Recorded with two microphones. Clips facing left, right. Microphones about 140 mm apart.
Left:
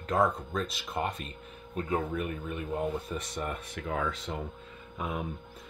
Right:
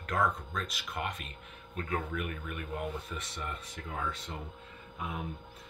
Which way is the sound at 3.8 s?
75° left (ahead or behind).